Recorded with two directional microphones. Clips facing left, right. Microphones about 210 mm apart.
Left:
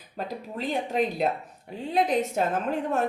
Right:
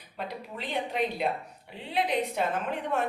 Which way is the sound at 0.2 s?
45° left (ahead or behind).